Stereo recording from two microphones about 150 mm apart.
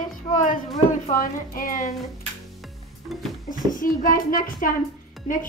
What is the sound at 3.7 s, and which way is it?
Speech, 65° left (ahead or behind).